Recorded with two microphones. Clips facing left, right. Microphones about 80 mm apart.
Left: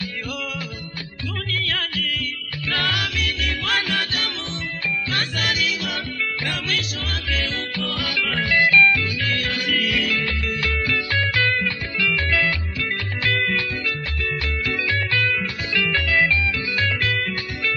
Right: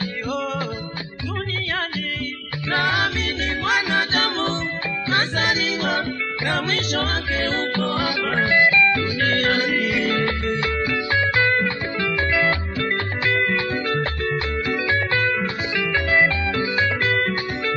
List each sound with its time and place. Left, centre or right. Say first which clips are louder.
1.7 s music: right 2 dB; right
5.1 s music: right 7 dB; right
9.7 s music: right 2 dB; right
16.1 s music: right 3 dB; right